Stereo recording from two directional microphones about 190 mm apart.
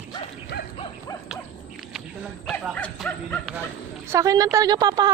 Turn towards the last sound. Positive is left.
turn(degrees=-20)  # may be behind; listen again after turning